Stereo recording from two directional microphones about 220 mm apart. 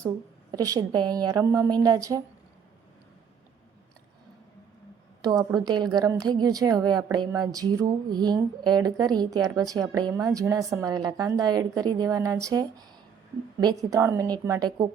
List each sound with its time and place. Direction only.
0.5 s a woman's voice: 15° right (ahead or behind)
5.5 s a woman's voice: 20° right (ahead or behind)